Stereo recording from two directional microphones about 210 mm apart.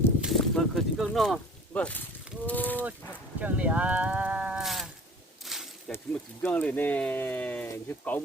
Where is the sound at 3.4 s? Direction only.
5° right (ahead or behind).